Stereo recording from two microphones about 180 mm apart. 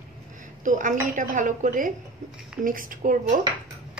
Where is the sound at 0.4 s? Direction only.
45° right (ahead or behind).